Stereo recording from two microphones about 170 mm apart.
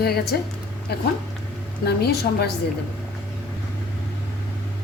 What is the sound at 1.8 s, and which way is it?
Speech, 70° left (ahead or behind).